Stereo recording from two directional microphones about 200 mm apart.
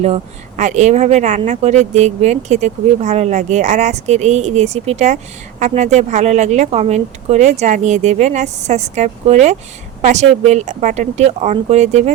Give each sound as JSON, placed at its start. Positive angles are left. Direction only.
{"t": 0.0, "sound": "speech", "side_deg": -35}